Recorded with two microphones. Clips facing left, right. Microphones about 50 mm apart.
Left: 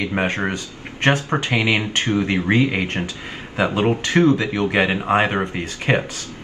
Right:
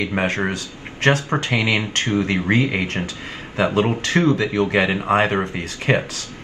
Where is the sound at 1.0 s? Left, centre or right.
Left.